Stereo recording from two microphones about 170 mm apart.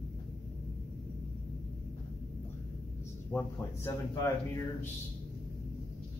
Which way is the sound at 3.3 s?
10° left (ahead or behind).